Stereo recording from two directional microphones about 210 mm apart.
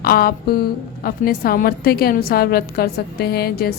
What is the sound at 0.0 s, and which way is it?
A woman's voice, 45° left (ahead or behind).